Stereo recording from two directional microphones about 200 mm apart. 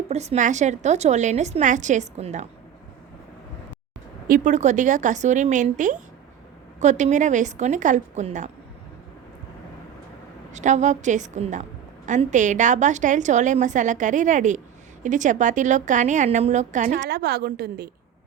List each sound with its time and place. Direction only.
0.1 s a woman's voice: 35° right (ahead or behind)
4.3 s a woman's voice: 40° right (ahead or behind)
10.5 s a woman's voice: 35° right (ahead or behind)
16.9 s a woman's voice: 55° right (ahead or behind)